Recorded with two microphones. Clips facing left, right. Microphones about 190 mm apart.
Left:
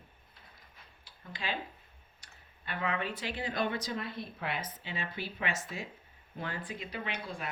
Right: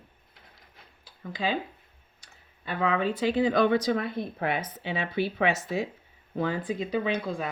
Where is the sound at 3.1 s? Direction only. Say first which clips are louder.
Right 13 dB; 90° right; by 5.8 s 70° right (ahead or behind).